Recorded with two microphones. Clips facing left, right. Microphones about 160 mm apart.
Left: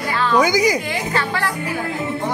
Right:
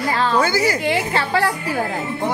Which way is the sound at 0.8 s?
30° right (ahead or behind).